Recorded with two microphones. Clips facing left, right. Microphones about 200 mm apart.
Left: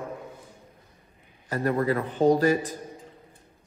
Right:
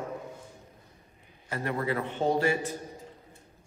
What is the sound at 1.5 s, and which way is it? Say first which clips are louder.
Speech: left 6 dB; 40° left (ahead or behind).